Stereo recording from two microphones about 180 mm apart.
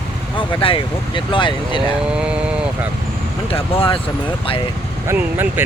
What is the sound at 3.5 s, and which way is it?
Speech, 30° left (ahead or behind).